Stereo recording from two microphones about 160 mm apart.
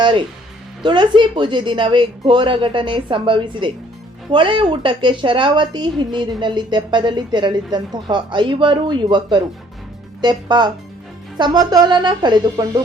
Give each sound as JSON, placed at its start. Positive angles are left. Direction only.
{"t": 0.8, "sound": "a woman's voice", "side_deg": -30}